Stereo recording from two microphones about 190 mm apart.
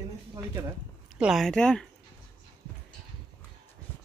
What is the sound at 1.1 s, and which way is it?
Speech, 5° right (ahead or behind).